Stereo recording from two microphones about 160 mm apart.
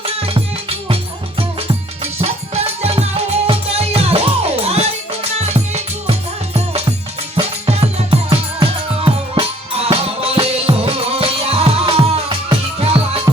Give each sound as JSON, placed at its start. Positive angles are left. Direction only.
{"t": 0.0, "sound": "music", "side_deg": -35}
{"t": 2.2, "sound": "music", "side_deg": -40}